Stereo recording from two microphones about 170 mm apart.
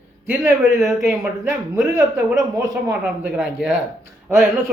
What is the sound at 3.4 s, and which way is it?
Speech, 5° right (ahead or behind).